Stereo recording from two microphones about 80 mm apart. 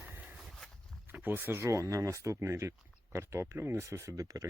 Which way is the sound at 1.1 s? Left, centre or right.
Right.